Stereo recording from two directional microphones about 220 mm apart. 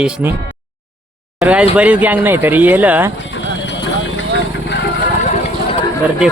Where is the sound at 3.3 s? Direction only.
55° left (ahead or behind).